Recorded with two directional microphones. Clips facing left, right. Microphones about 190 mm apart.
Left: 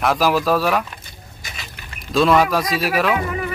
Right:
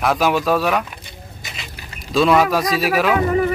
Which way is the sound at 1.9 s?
Centre (ahead or behind).